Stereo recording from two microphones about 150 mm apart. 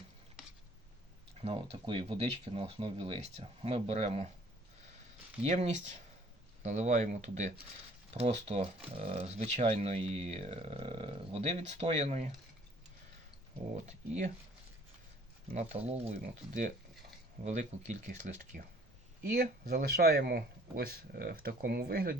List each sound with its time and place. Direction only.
1.4 s speech: 40° right (ahead or behind)
5.4 s speech: 50° right (ahead or behind)
13.8 s speech: 50° right (ahead or behind)
15.5 s speech: 50° right (ahead or behind)
19.3 s speech: 85° right